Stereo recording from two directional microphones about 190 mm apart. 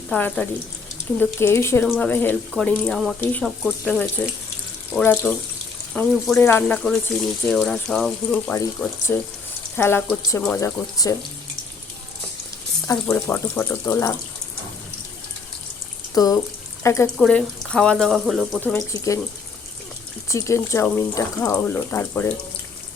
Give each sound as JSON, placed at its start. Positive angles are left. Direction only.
{"t": 0.1, "sound": "speech", "side_deg": 5}
{"t": 13.1, "sound": "speech", "side_deg": 5}
{"t": 16.1, "sound": "speech", "side_deg": 20}
{"t": 17.2, "sound": "speech", "side_deg": 5}
{"t": 18.6, "sound": "speech", "side_deg": 15}
{"t": 20.2, "sound": "speech", "side_deg": 15}